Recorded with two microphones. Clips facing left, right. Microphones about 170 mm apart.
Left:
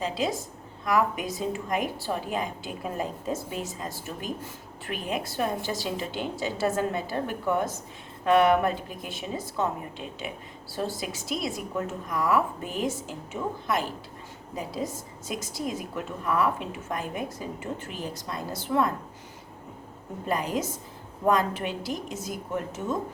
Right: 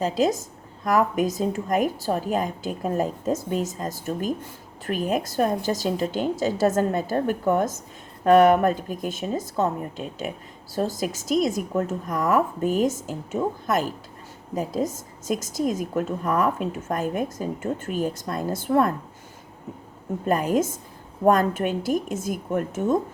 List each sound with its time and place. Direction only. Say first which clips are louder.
0.0 s a woman's voice: right 6 dB; 45° right (ahead or behind)
20.2 s a woman's voice: right 6 dB; 50° right (ahead or behind)